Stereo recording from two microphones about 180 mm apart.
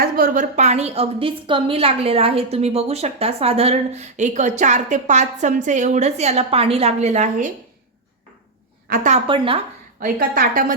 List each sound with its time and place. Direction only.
0.0 s a woman's voice: 50° right (ahead or behind)
8.9 s a woman's voice: 40° right (ahead or behind)
10.0 s a woman's voice: 50° right (ahead or behind)